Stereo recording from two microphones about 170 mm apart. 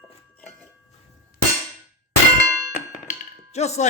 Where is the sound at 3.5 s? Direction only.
40° left (ahead or behind).